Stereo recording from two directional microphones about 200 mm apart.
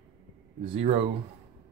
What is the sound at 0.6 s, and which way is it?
Speech, 30° right (ahead or behind).